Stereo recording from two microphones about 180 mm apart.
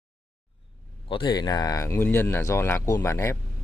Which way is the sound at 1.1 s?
25° left (ahead or behind).